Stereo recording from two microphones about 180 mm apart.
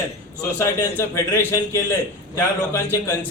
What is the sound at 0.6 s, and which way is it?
A man's voice, 15° left (ahead or behind).